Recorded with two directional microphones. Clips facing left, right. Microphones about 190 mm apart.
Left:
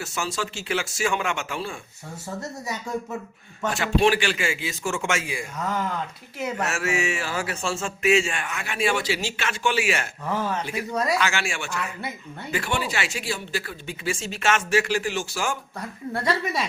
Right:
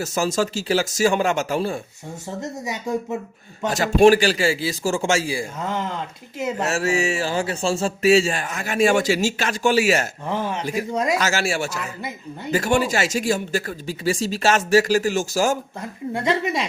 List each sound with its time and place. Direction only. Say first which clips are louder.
0.0 s a man's voice: right 8 dB; 40° right (ahead or behind)
3.7 s a man's voice: right 7 dB; 40° right (ahead or behind)
10.2 s speech: right 2 dB; 20° right (ahead or behind)
11.2 s a man's voice: right 5 dB; 40° right (ahead or behind)
16.1 s speech: right 4 dB; 20° right (ahead or behind)